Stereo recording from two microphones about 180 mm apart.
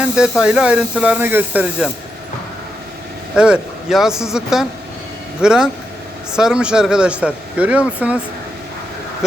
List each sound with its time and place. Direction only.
0.0 s speech: 5° right (ahead or behind)
3.3 s speech: 5° right (ahead or behind)